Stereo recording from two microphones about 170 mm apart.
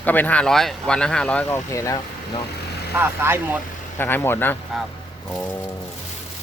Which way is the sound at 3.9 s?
10° left (ahead or behind).